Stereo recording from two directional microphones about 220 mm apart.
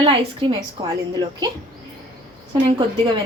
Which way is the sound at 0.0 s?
25° right (ahead or behind).